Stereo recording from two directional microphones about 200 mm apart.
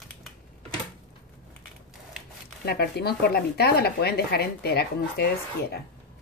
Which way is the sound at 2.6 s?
55° left (ahead or behind).